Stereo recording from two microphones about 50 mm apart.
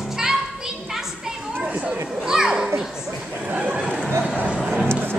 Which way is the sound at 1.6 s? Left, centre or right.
Right.